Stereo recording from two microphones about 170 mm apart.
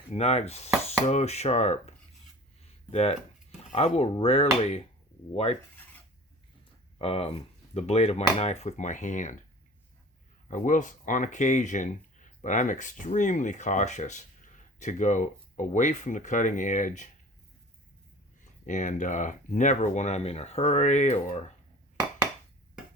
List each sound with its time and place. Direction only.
0.1 s speech: 40° left (ahead or behind)
7.0 s speech: 35° left (ahead or behind)
10.5 s speech: 50° left (ahead or behind)
18.6 s speech: 45° left (ahead or behind)